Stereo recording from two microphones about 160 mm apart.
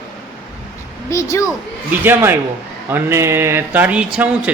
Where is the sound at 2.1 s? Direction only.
15° right (ahead or behind).